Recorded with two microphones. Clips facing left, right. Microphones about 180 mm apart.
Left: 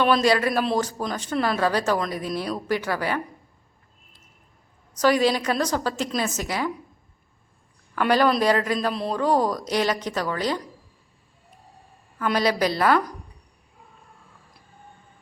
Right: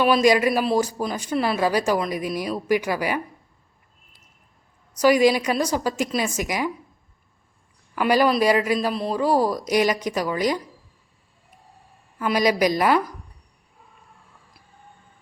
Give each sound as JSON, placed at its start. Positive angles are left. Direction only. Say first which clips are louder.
{"t": 0.0, "sound": "speech", "louder": "right 2 dB", "side_deg": -10}
{"t": 4.9, "sound": "speech", "louder": "right 3 dB", "side_deg": -10}
{"t": 7.9, "sound": "speech", "louder": "right 1 dB", "side_deg": -10}
{"t": 12.2, "sound": "speech", "louder": "right 2 dB", "side_deg": -10}